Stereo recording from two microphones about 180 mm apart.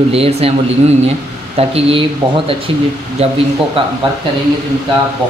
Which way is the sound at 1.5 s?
30° right (ahead or behind).